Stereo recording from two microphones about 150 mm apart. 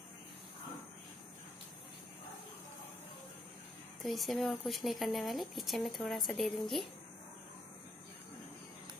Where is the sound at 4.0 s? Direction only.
Centre (ahead or behind).